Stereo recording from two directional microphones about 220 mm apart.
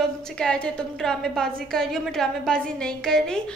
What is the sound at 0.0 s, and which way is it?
A woman's voice, centre (ahead or behind).